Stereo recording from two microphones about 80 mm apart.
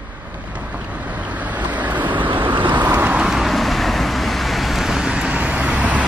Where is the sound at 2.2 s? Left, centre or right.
Right.